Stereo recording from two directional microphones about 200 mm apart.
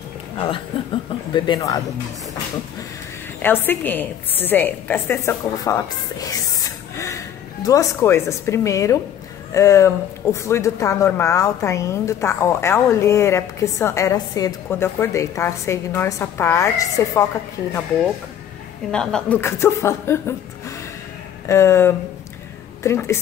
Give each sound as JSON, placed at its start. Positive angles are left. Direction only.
{"t": 0.7, "sound": "speech", "side_deg": 25}
{"t": 3.4, "sound": "a woman's voice", "side_deg": 10}
{"t": 18.9, "sound": "speech", "side_deg": 5}
{"t": 21.5, "sound": "speech", "side_deg": 15}